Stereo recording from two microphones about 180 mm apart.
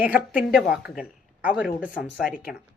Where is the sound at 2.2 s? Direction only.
50° left (ahead or behind).